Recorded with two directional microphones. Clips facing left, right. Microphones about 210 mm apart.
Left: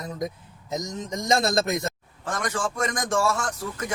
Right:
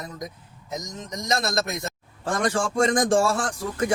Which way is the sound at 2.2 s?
30° right (ahead or behind).